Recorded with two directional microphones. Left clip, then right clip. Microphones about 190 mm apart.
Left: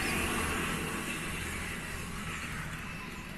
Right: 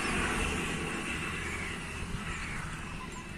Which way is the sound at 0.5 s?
20° right (ahead or behind).